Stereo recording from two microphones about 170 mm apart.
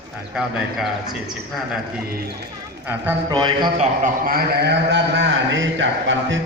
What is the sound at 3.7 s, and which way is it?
A man's voice, 50° right (ahead or behind).